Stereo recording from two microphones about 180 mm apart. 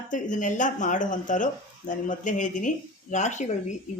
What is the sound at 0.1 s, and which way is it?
Speech, 45° left (ahead or behind).